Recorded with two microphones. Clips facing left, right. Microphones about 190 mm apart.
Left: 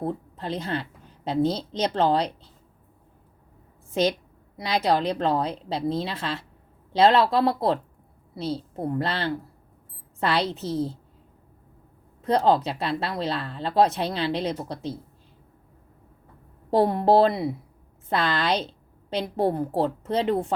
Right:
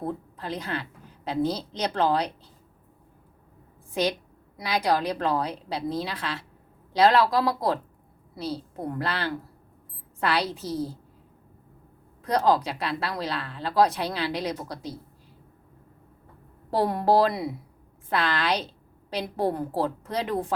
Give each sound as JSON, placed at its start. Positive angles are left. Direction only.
{"t": 0.0, "sound": "speech", "side_deg": 30}
{"t": 4.5, "sound": "speech", "side_deg": 25}
{"t": 9.0, "sound": "speech", "side_deg": 25}
{"t": 12.2, "sound": "speech", "side_deg": 25}
{"t": 16.8, "sound": "speech", "side_deg": 25}